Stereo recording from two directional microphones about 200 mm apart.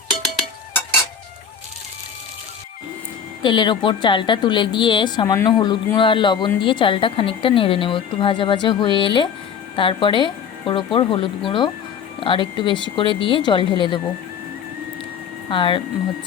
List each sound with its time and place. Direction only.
3.4 s a woman's voice: 25° left (ahead or behind)
15.4 s a woman's voice: 25° left (ahead or behind)